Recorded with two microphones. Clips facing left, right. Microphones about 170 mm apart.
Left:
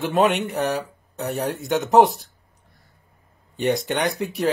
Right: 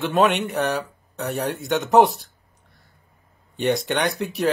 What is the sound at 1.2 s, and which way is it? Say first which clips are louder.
Speech: even; centre (ahead or behind).